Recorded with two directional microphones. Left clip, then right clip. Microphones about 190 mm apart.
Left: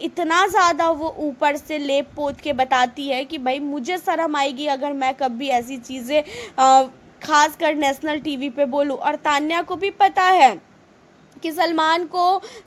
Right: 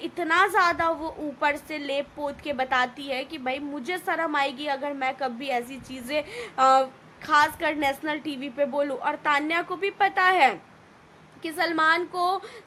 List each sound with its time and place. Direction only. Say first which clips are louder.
0.0 s a woman's voice: left 4 dB; 25° left (ahead or behind)